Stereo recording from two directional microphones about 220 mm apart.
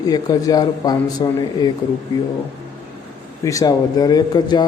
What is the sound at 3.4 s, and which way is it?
Speech, 15° left (ahead or behind).